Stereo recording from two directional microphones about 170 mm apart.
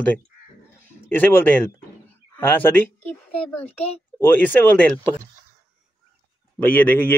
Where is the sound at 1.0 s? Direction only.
10° left (ahead or behind).